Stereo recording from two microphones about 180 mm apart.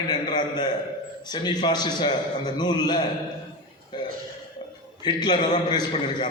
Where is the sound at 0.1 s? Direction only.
25° left (ahead or behind).